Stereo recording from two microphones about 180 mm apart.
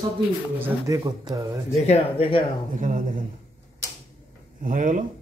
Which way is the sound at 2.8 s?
45° right (ahead or behind).